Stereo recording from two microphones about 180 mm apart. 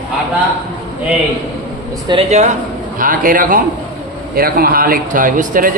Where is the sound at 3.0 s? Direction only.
50° right (ahead or behind).